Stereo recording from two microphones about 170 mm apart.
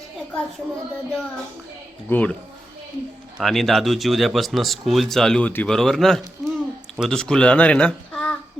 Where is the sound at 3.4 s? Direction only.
Centre (ahead or behind).